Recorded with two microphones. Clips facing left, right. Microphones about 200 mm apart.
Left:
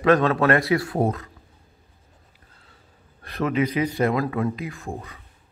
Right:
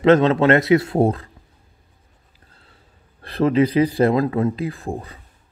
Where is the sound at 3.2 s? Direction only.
30° right (ahead or behind).